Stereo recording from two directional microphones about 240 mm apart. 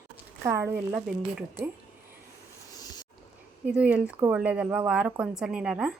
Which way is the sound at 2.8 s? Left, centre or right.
Centre.